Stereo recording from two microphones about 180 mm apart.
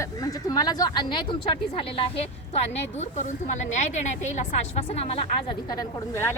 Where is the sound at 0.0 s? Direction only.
20° left (ahead or behind).